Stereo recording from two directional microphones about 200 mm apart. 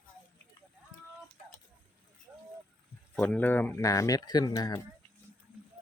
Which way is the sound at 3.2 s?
10° left (ahead or behind).